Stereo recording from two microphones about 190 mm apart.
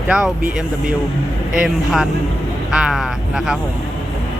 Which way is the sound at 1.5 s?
5° right (ahead or behind).